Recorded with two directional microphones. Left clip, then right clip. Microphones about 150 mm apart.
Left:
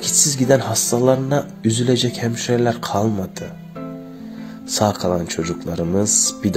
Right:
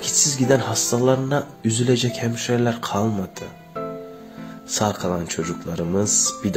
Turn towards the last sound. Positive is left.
turn(degrees=35)  # may be behind; listen again after turning